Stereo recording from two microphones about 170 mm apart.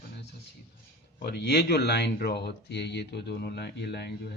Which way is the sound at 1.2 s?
65° left (ahead or behind).